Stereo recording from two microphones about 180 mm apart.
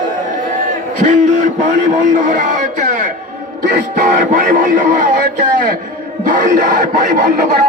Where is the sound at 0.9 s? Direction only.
45° right (ahead or behind).